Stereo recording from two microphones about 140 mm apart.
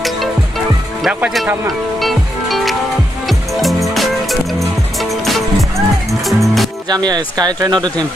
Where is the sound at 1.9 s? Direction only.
Centre (ahead or behind).